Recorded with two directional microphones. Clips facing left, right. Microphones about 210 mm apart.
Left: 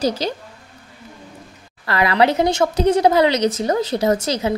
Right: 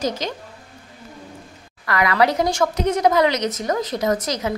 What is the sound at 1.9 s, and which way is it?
Speech, 30° left (ahead or behind).